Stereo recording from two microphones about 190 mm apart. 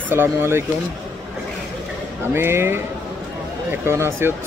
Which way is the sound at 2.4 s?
10° right (ahead or behind).